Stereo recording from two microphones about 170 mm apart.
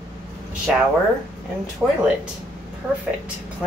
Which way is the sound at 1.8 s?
5° right (ahead or behind).